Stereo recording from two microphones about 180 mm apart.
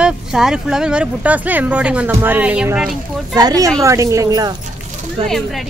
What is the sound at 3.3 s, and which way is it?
Speech, 20° right (ahead or behind).